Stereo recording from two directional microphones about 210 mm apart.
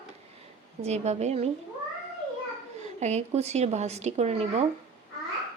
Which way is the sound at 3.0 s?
30° right (ahead or behind).